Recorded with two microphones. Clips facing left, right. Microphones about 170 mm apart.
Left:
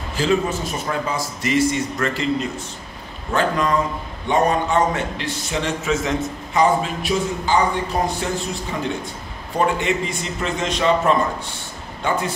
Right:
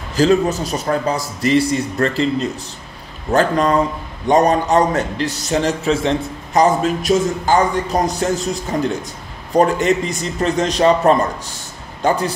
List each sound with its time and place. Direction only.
0.1 s a man's voice: 40° right (ahead or behind)
3.3 s a man's voice: 40° right (ahead or behind)